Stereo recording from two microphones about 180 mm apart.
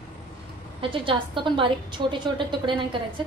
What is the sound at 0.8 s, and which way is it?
A woman's voice, 30° right (ahead or behind).